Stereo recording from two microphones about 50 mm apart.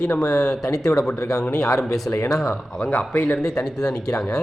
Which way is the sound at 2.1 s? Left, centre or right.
Left.